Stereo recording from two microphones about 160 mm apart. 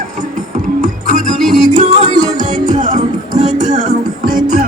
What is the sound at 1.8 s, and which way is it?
Music, 45° right (ahead or behind).